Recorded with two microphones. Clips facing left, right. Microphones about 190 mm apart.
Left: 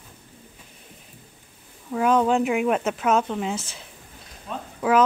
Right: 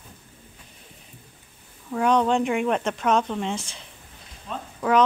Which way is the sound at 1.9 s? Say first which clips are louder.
Left 1 dB; 5° left (ahead or behind).